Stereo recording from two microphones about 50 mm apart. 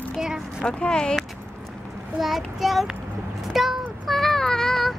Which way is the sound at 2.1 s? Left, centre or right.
Centre.